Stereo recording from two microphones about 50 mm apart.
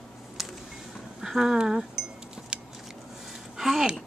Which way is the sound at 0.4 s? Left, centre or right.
Centre.